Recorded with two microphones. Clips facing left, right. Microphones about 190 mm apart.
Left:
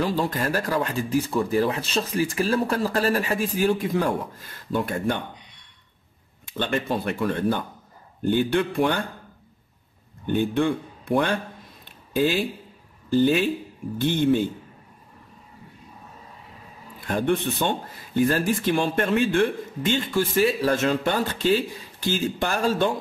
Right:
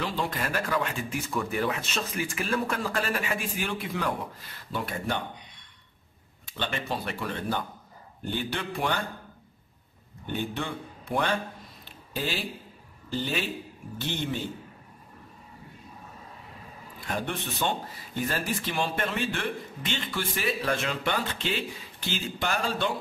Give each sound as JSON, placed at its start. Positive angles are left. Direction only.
{"t": 0.0, "sound": "speech", "side_deg": 40}
{"t": 6.5, "sound": "speech", "side_deg": 50}
{"t": 10.2, "sound": "speech", "side_deg": 50}
{"t": 13.9, "sound": "speech", "side_deg": 50}
{"t": 17.1, "sound": "speech", "side_deg": 50}